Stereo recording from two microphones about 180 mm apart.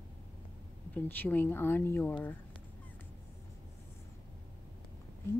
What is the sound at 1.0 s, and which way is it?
Speech, 10° left (ahead or behind).